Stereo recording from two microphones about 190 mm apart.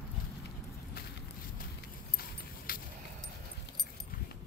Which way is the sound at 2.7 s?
50° left (ahead or behind).